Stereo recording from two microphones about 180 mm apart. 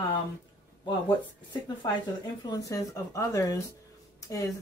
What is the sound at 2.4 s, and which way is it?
Speech, 20° left (ahead or behind).